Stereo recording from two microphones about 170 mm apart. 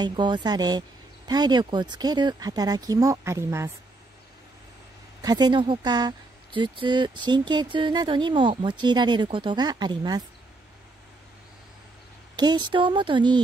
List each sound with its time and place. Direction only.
0.0 s speech: 25° right (ahead or behind)
5.2 s speech: 25° right (ahead or behind)
12.4 s speech: 25° right (ahead or behind)